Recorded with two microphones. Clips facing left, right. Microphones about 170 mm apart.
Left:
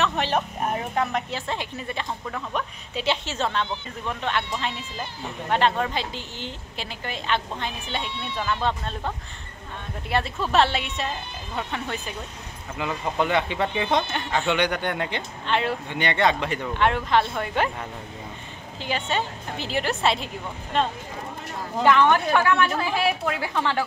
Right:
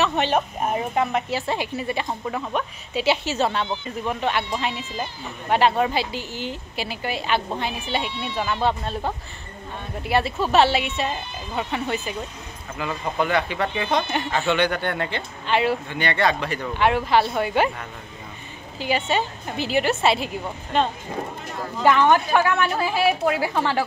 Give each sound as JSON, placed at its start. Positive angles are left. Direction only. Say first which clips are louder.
{"t": 0.6, "sound": "a woman's voice", "louder": "right 3 dB", "side_deg": -10}
{"t": 13.2, "sound": "speech", "louder": "right 1 dB", "side_deg": 20}
{"t": 14.1, "sound": "a woman's voice", "louder": "right 2 dB", "side_deg": -5}
{"t": 14.5, "sound": "a man's voice", "louder": "right 3 dB", "side_deg": 15}
{"t": 15.4, "sound": "a woman's voice", "louder": "right 4 dB", "side_deg": -5}
{"t": 15.9, "sound": "speech", "louder": "even", "side_deg": 20}
{"t": 16.6, "sound": "a woman's voice", "louder": "right 3 dB", "side_deg": -5}
{"t": 18.8, "sound": "a woman's voice", "louder": "right 4 dB", "side_deg": -5}